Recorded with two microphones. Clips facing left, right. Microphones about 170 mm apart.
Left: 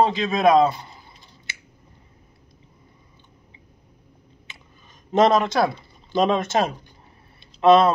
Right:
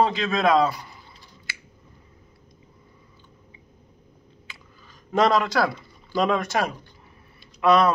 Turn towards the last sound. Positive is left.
turn(degrees=25)  # may be behind; listen again after turning